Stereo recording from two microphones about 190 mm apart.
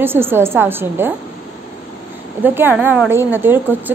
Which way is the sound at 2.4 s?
10° right (ahead or behind).